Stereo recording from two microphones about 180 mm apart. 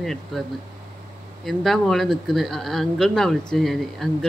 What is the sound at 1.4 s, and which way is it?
Speech, centre (ahead or behind).